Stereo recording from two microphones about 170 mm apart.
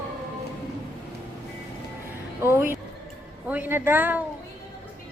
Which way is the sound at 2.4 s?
15° right (ahead or behind).